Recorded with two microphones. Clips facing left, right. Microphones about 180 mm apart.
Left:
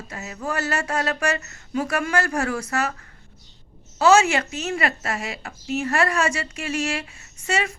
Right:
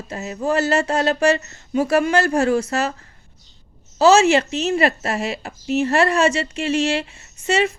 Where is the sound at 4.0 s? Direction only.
25° right (ahead or behind).